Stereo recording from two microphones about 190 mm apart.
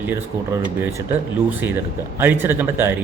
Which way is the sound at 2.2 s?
10° right (ahead or behind).